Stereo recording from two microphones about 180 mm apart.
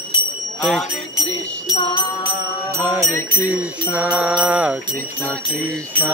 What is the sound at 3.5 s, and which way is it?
Speech, 5° right (ahead or behind).